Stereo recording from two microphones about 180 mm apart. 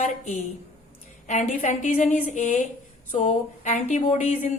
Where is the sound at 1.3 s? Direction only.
40° left (ahead or behind).